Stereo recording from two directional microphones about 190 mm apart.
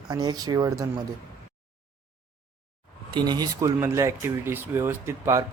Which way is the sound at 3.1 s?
20° right (ahead or behind).